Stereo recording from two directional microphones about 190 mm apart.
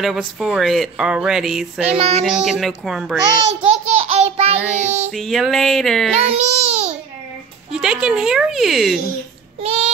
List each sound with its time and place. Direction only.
0.0 s speech: centre (ahead or behind)
2.0 s child singing: 30° right (ahead or behind)
2.2 s speech: 5° right (ahead or behind)
3.6 s child singing: 30° right (ahead or behind)
5.1 s speech: centre (ahead or behind)
6.1 s babbling: 35° right (ahead or behind)
7.7 s speech: 5° right (ahead or behind)
9.6 s a sound: 30° right (ahead or behind)